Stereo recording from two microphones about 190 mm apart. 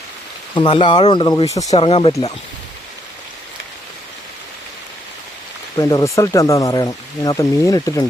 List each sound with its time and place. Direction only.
0.5 s speech: 25° left (ahead or behind)
1.7 s speech: 30° left (ahead or behind)
5.7 s speech: 20° left (ahead or behind)